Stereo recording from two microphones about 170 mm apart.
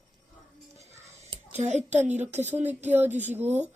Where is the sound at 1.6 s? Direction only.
45° right (ahead or behind).